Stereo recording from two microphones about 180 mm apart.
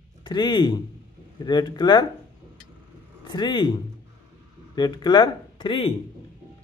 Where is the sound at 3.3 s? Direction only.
25° left (ahead or behind).